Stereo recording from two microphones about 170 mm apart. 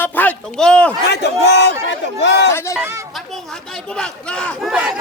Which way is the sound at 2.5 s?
15° left (ahead or behind).